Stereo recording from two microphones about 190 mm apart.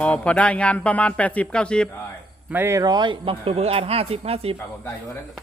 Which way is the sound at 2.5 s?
10° right (ahead or behind).